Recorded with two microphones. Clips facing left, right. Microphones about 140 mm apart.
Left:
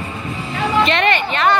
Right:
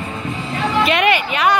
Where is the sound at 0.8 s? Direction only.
10° right (ahead or behind).